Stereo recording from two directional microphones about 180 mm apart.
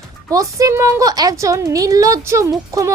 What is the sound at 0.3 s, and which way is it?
A woman's voice, 20° right (ahead or behind).